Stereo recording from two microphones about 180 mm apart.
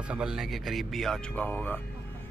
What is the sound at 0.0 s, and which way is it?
Speech, 5° right (ahead or behind).